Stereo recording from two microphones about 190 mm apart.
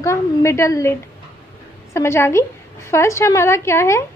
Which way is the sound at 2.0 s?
15° left (ahead or behind).